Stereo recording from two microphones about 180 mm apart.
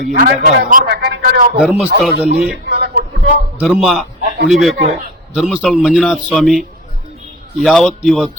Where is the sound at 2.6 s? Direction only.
65° right (ahead or behind).